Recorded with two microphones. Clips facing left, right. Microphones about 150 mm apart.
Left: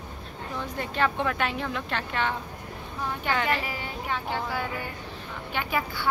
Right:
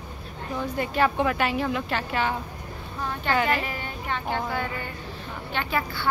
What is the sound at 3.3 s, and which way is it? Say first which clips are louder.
Speech: right 4 dB; 5° right (ahead or behind).